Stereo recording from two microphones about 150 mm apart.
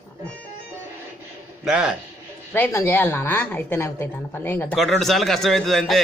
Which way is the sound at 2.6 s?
15° left (ahead or behind).